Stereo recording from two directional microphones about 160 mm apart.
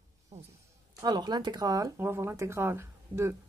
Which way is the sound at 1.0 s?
25° right (ahead or behind).